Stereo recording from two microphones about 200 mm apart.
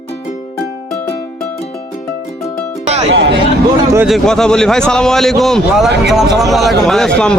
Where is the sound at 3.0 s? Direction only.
65° right (ahead or behind).